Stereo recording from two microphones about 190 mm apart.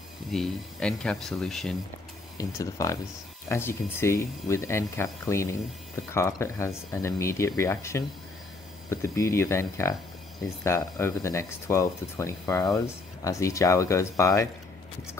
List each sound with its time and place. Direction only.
0.3 s speech: 5° left (ahead or behind)
2.3 s speech: 15° left (ahead or behind)